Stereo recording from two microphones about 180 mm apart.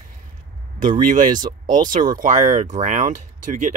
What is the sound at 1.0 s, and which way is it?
Speech, 45° right (ahead or behind).